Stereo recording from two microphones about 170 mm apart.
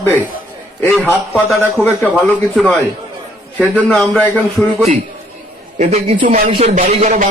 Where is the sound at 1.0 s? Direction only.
10° left (ahead or behind).